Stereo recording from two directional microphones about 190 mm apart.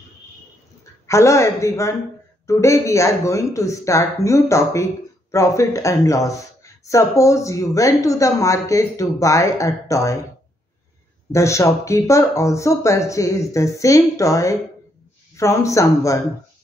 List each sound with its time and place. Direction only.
1.0 s speech: 15° left (ahead or behind)
11.3 s speech: 15° left (ahead or behind)